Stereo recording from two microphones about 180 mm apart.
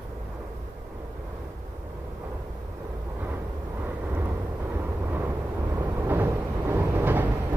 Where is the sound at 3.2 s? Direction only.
10° right (ahead or behind).